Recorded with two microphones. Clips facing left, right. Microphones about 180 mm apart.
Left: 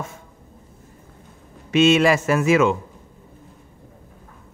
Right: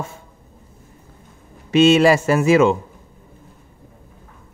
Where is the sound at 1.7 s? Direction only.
35° right (ahead or behind).